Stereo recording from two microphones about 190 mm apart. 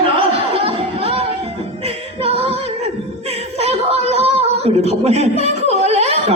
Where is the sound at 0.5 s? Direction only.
30° right (ahead or behind).